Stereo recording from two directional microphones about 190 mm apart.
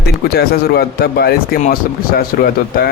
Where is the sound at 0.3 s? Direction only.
55° left (ahead or behind).